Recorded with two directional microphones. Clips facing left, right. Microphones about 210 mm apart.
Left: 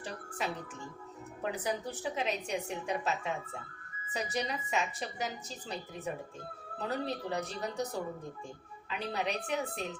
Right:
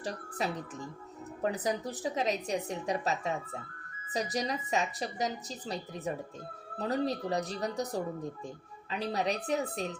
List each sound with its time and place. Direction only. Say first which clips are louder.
0.0 s a woman's voice: right 3 dB; 35° right (ahead or behind)